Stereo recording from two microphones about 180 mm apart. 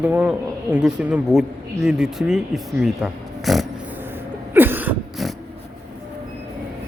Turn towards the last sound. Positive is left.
turn(degrees=-5)  # may be behind; listen again after turning